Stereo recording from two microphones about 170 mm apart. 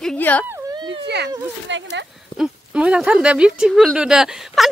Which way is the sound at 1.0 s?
80° right.